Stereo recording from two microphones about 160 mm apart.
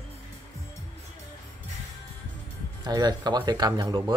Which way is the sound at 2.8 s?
25° right (ahead or behind).